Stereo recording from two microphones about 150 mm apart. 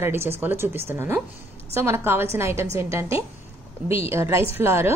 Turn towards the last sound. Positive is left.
turn(degrees=-15)  # may be behind; listen again after turning